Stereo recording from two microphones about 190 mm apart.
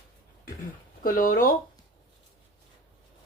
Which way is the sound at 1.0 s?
45° left (ahead or behind).